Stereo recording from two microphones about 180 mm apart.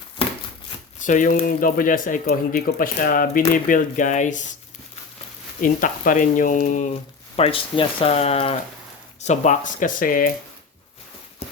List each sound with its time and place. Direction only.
0.2 s a sound: 30° left (ahead or behind)
0.9 s speech: 45° left (ahead or behind)
5.5 s speech: 50° left (ahead or behind)
7.3 s speech: 30° left (ahead or behind); by 10.3 s 50° left (ahead or behind)